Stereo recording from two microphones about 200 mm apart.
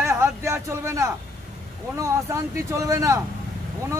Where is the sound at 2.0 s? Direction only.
15° right (ahead or behind).